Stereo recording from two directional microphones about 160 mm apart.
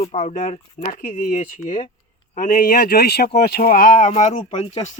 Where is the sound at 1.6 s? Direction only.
35° left (ahead or behind).